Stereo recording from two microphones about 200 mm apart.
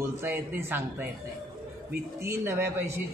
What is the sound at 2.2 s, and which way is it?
Speech, 15° right (ahead or behind).